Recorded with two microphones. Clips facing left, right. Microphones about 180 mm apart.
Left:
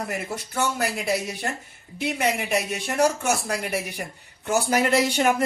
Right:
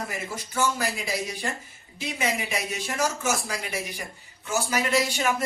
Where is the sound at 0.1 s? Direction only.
60° left (ahead or behind).